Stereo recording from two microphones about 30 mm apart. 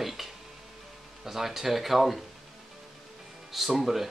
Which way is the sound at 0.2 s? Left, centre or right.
Centre.